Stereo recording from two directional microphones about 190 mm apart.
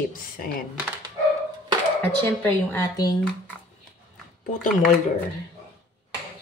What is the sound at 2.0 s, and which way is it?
Speech, 10° left (ahead or behind).